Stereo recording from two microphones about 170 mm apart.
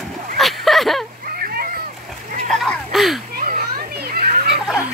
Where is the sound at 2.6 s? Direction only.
Centre (ahead or behind).